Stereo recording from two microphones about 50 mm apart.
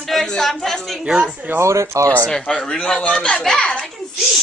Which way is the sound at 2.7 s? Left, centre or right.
Left.